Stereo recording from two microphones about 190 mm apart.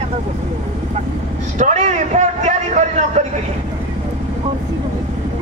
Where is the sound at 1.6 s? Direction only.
40° right (ahead or behind).